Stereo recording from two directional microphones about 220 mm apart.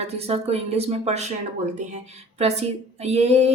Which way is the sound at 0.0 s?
30° right (ahead or behind).